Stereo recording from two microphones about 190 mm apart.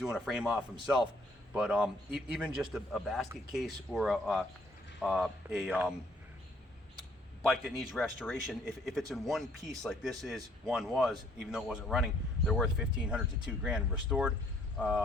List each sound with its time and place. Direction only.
0.0 s a man's voice: centre (ahead or behind)
7.4 s a man's voice: centre (ahead or behind)